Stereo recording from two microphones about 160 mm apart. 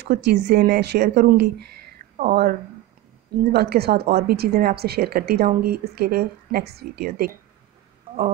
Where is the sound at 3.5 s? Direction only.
85° right.